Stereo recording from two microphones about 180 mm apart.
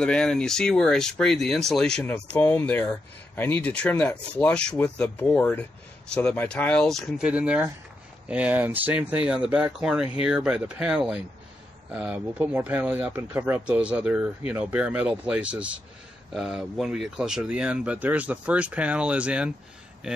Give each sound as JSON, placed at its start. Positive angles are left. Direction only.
{"t": 0.0, "sound": "speech", "side_deg": 5}